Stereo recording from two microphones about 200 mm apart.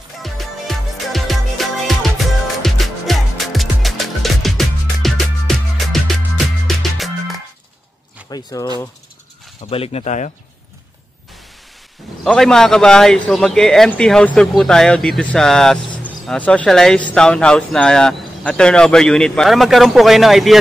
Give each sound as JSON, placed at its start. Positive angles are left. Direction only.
{"t": 0.2, "sound": "music", "side_deg": 0}
{"t": 8.3, "sound": "speech", "side_deg": 20}
{"t": 9.6, "sound": "speech", "side_deg": 30}
{"t": 12.3, "sound": "a man's voice", "side_deg": 5}